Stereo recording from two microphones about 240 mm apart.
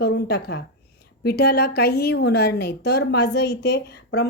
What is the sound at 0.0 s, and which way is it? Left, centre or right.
A woman's voice, left.